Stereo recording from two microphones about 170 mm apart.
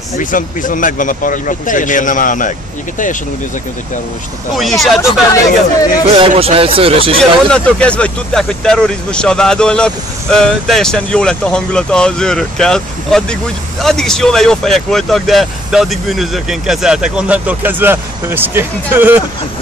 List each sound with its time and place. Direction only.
0.2 s speech: 50° left (ahead or behind)
4.6 s speech: centre (ahead or behind)
6.1 s speech: 35° right (ahead or behind)
7.2 s speech: 5° left (ahead or behind); by 19.2 s 10° right (ahead or behind)